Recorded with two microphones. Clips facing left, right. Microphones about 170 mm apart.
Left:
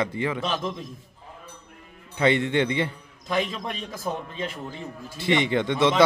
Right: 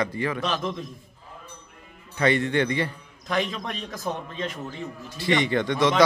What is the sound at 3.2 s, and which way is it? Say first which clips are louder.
A man's voice: even; 5° left (ahead or behind).